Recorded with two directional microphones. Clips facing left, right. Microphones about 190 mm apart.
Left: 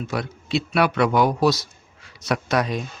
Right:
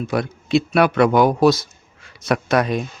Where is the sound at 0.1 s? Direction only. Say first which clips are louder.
Right 7 dB; 50° right (ahead or behind).